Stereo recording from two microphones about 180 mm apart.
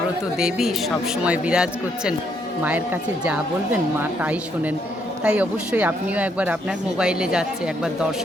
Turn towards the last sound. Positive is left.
turn(degrees=-5)  # may be behind; listen again after turning